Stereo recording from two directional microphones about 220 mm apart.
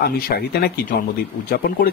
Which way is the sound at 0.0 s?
45° left (ahead or behind).